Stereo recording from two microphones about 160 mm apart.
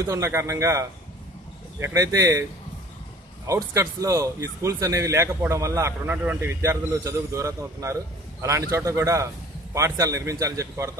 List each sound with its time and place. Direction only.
0.0 s a man's voice: 20° right (ahead or behind)
3.4 s a man's voice: 20° right (ahead or behind)